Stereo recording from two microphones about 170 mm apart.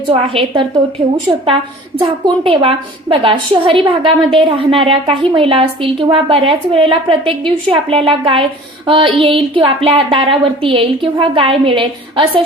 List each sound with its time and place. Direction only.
0.1 s a woman's voice: 30° right (ahead or behind)
2.0 s a woman's voice: 30° right (ahead or behind)